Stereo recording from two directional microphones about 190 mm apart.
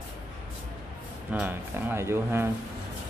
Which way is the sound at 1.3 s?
10° right (ahead or behind).